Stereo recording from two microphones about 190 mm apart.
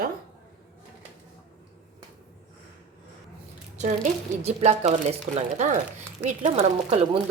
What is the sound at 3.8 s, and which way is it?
Speech, 35° right (ahead or behind).